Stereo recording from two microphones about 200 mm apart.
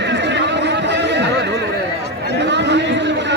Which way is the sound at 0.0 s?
60° right (ahead or behind).